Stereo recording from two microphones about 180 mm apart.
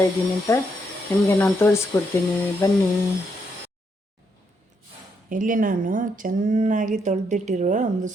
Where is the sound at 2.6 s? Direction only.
20° left (ahead or behind).